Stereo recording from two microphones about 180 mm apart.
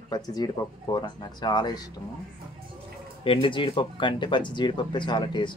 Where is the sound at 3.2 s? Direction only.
30° left (ahead or behind).